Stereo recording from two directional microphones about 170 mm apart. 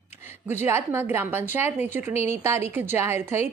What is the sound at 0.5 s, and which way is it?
A woman's voice, 15° right (ahead or behind).